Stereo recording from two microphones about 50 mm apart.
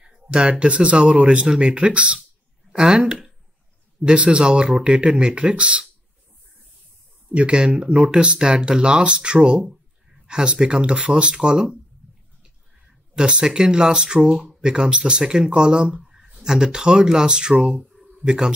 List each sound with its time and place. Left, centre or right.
0.0 s speech: centre
7.3 s speech: right
13.1 s speech: centre